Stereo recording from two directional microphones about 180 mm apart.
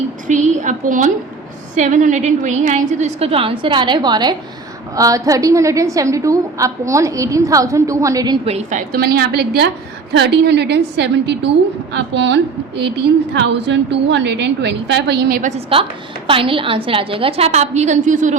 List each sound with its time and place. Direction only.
0.3 s a woman's voice: 40° right (ahead or behind); by 8.4 s 20° right (ahead or behind)
8.4 s a woman's voice: 35° right (ahead or behind)
8.9 s a woman's voice: 60° right (ahead or behind)
15.5 s a woman's voice: 30° right (ahead or behind)